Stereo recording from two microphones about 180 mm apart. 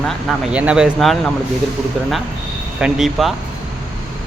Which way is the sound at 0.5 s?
5° right (ahead or behind).